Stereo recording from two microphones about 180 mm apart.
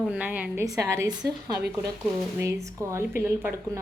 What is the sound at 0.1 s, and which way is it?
A woman's voice, 5° right (ahead or behind).